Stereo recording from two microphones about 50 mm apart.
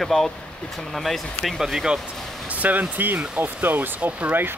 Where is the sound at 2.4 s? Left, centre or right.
Right.